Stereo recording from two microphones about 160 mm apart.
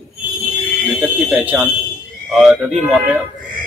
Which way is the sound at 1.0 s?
10° right (ahead or behind).